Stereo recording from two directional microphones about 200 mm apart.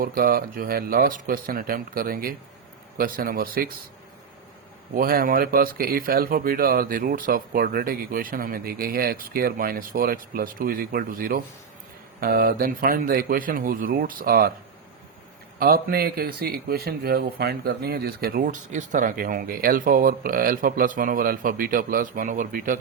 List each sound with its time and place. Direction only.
0.0 s speech: 45° right (ahead or behind)
4.9 s speech: 45° right (ahead or behind)
15.5 s speech: 45° right (ahead or behind)